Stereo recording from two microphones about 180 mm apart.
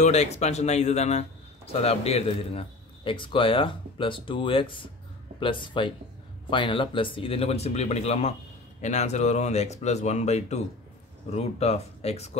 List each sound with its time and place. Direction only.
0.0 s a man's voice: 40° left (ahead or behind)